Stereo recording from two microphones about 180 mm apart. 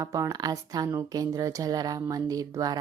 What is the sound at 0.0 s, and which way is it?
Speech, 20° right (ahead or behind).